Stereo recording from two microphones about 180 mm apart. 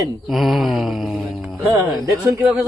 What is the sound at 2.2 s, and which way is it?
Speech, 5° right (ahead or behind).